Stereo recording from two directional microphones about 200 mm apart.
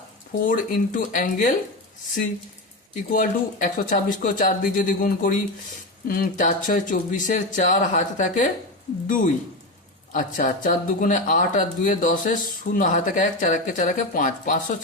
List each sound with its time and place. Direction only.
0.4 s speech: 40° left (ahead or behind)
3.1 s speech: 40° left (ahead or behind)